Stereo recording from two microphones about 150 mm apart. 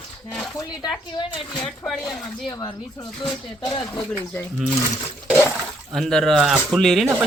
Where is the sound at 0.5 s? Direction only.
25° left (ahead or behind).